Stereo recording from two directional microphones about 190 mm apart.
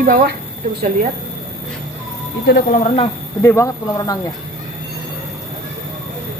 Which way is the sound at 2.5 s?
45° left (ahead or behind).